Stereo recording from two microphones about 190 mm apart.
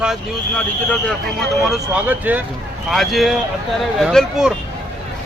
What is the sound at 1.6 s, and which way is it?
Speech, 5° right (ahead or behind).